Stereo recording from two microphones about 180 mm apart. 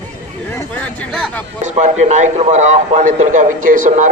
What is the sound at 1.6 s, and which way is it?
A man's voice, 40° right (ahead or behind).